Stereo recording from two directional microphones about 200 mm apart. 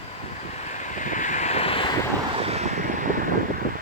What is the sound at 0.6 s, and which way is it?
Vehicle, 35° left (ahead or behind).